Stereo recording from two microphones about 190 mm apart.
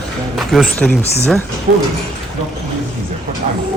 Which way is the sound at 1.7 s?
50° right (ahead or behind).